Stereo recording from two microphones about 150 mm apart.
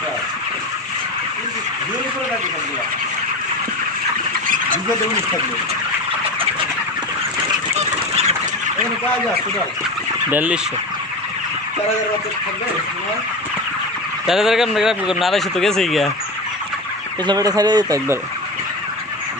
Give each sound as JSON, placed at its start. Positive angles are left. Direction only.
{"t": 7.8, "sound": "goose", "side_deg": -45}
{"t": 10.2, "sound": "fowl", "side_deg": -10}
{"t": 14.3, "sound": "speech", "side_deg": 0}
{"t": 17.2, "sound": "speech", "side_deg": -25}